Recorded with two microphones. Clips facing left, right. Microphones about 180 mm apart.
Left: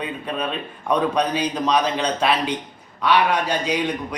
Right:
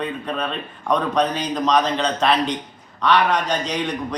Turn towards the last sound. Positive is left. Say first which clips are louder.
# left 1 dB
turn(degrees=10)  # may be behind; listen again after turning